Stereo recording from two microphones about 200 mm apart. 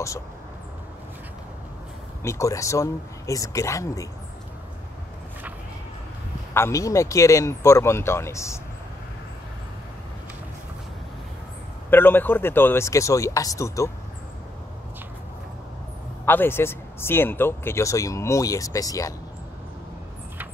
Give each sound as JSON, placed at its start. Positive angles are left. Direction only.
{"t": 2.2, "sound": "speech", "side_deg": 15}
{"t": 6.5, "sound": "speech", "side_deg": 15}
{"t": 11.9, "sound": "speech", "side_deg": 10}
{"t": 16.3, "sound": "speech", "side_deg": 10}